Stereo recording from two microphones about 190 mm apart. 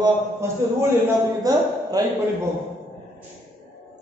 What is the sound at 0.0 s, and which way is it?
A man's voice, 15° right (ahead or behind).